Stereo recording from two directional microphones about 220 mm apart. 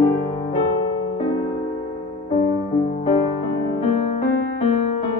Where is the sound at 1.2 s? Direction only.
25° left (ahead or behind).